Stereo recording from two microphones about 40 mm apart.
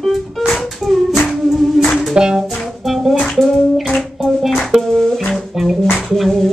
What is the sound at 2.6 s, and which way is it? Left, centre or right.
Music, centre.